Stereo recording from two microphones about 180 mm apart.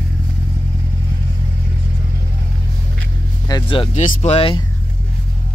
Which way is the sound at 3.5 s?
25° left (ahead or behind).